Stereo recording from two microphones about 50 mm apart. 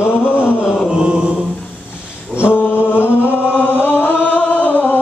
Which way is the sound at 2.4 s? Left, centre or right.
Left.